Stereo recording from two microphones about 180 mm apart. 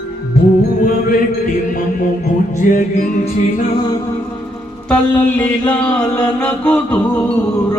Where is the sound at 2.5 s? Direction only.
45° left (ahead or behind).